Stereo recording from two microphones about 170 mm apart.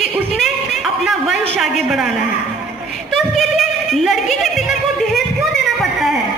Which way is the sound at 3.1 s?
Centre (ahead or behind).